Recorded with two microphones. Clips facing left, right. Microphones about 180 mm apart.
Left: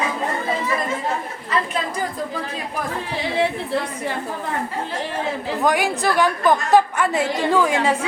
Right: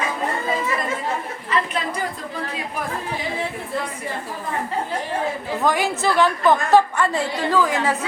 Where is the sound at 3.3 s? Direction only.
75° left (ahead or behind).